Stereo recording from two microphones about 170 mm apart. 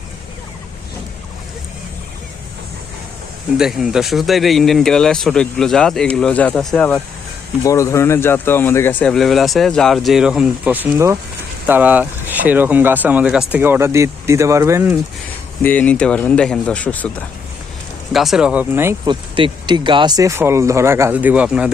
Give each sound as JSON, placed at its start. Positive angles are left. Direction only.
{"t": 3.6, "sound": "speech", "side_deg": 0}
{"t": 15.6, "sound": "speech", "side_deg": 10}
{"t": 18.1, "sound": "speech", "side_deg": 0}
{"t": 19.0, "sound": "speech", "side_deg": -25}